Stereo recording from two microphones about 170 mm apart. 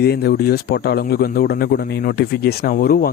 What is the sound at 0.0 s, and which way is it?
Speech, 70° left (ahead or behind).